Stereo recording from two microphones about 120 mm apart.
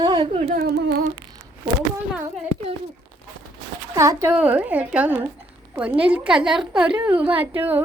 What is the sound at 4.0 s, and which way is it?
Speech, 25° right (ahead or behind).